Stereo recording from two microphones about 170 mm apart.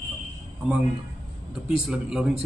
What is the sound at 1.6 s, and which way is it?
Speech, 5° right (ahead or behind).